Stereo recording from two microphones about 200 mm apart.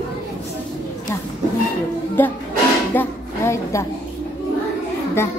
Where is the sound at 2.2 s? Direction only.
10° left (ahead or behind).